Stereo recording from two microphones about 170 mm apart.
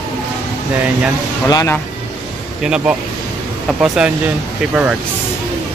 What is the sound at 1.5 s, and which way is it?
Speech, 15° left (ahead or behind).